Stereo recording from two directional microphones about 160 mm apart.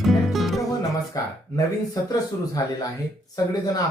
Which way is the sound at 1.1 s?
20° left (ahead or behind).